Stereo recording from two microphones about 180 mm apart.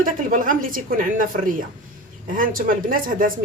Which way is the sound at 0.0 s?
45° right (ahead or behind).